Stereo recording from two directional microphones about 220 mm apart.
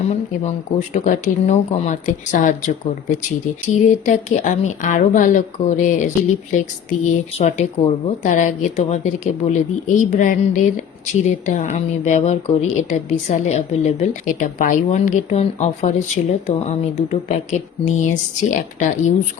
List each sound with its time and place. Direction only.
0.1 s speech: 30° left (ahead or behind)
3.8 s speech: 35° left (ahead or behind)